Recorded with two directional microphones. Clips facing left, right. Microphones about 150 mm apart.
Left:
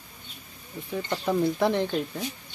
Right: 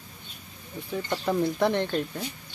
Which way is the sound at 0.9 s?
Centre (ahead or behind).